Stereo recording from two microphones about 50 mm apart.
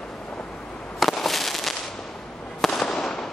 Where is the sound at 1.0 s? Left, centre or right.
Centre.